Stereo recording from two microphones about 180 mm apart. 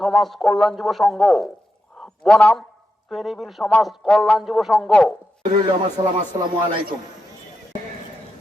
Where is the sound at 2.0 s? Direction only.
5° left (ahead or behind).